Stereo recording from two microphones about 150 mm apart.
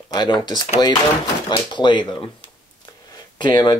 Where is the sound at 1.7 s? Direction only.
30° left (ahead or behind).